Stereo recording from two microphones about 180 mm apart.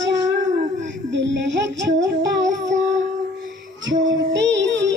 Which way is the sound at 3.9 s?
85° right.